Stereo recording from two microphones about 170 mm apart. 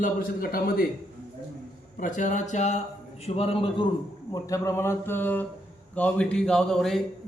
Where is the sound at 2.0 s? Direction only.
50° left (ahead or behind); by 3.9 s 30° left (ahead or behind).